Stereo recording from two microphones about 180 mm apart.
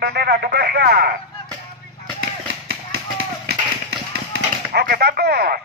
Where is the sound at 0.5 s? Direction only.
65° right (ahead or behind).